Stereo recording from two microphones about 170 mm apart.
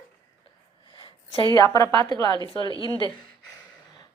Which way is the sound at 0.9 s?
25° left (ahead or behind).